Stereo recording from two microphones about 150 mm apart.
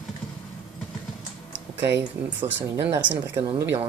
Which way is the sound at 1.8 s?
15° right (ahead or behind).